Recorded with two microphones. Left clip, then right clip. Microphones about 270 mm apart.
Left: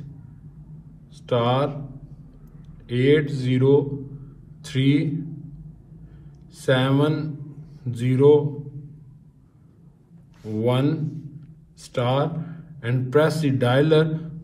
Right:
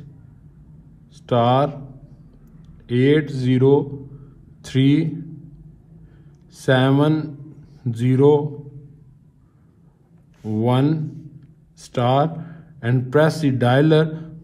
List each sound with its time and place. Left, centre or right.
1.2 s a man's voice: right
6.5 s a man's voice: right
10.6 s a man's voice: right